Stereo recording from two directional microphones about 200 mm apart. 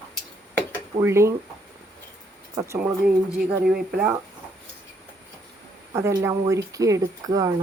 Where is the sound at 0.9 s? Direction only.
15° right (ahead or behind).